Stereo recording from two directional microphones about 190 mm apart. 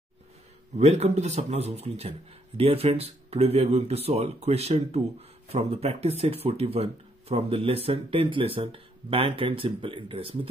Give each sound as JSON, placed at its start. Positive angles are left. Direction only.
{"t": 0.7, "sound": "speech", "side_deg": -35}